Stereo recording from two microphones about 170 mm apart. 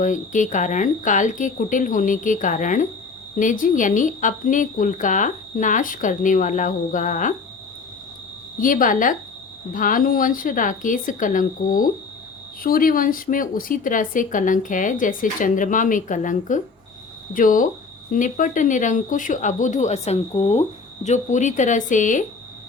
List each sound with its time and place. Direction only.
0.0 s speech: 50° left (ahead or behind)
8.6 s speech: 50° left (ahead or behind)